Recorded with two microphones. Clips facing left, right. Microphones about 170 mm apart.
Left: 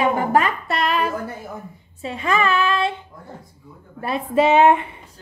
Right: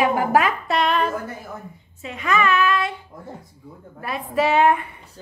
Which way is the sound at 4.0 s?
25° left (ahead or behind).